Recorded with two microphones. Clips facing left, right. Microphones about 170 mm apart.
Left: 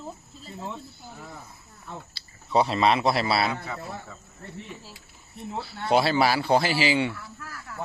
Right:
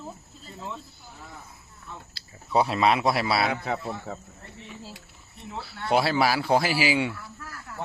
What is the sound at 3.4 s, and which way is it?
Speech, 70° right (ahead or behind).